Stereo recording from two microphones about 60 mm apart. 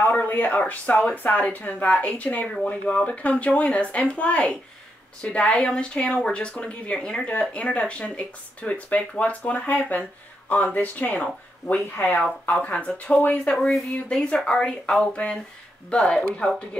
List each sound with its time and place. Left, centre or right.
0.0 s speech: left
13.6 s speech: centre